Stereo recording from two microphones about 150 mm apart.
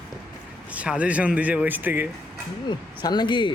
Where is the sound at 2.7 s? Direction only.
30° left (ahead or behind).